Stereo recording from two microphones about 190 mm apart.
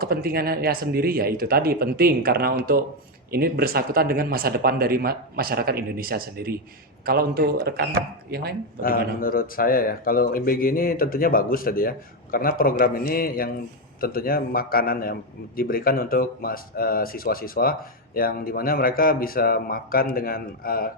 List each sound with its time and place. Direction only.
0.0 s speech: 50° right (ahead or behind)
9.2 s a man's voice: 50° left (ahead or behind)